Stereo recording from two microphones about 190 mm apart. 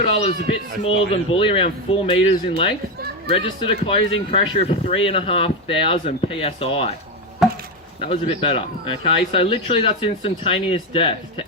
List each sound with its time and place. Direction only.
0.1 s speech: 35° left (ahead or behind)
7.4 s a sound: centre (ahead or behind)
8.0 s speech: 30° left (ahead or behind)